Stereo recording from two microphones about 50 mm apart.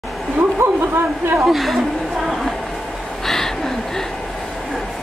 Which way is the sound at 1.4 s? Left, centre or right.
Centre.